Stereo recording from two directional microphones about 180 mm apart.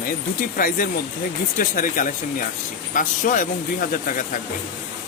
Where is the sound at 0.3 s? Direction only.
50° left (ahead or behind).